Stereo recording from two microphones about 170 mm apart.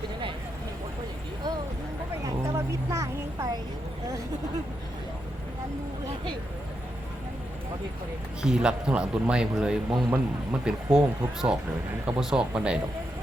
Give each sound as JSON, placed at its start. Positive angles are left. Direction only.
{"t": 2.2, "sound": "vehicle", "side_deg": -15}
{"t": 8.4, "sound": "speech", "side_deg": -5}